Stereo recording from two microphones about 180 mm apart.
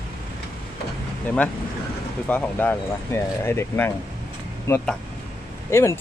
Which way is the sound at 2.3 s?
10° left (ahead or behind).